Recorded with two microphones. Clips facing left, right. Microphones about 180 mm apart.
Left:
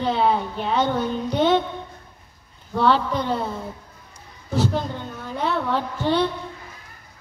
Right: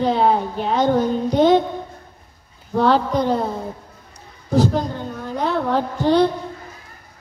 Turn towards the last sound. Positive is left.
turn(degrees=-40)  # may be behind; listen again after turning